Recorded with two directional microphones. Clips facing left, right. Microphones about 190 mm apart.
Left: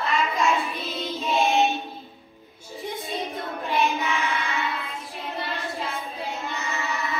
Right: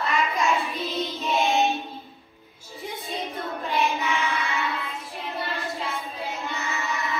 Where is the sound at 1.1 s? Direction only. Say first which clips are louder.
Left 3 dB; centre (ahead or behind).